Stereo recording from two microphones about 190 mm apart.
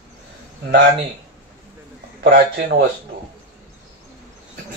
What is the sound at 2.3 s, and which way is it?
Speech, 55° right (ahead or behind).